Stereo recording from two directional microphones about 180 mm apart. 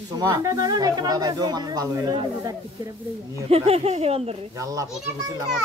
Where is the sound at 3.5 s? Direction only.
35° right (ahead or behind).